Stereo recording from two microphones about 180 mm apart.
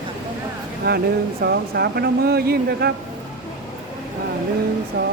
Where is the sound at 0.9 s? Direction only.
55° right (ahead or behind).